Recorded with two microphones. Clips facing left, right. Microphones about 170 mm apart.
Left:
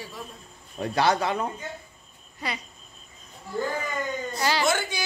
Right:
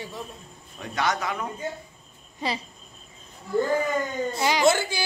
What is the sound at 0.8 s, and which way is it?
Speech, 30° left (ahead or behind).